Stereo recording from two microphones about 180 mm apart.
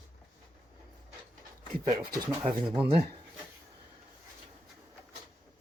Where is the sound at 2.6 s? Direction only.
5° right (ahead or behind).